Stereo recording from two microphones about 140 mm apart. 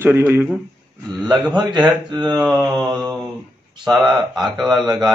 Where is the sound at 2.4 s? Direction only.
Centre (ahead or behind).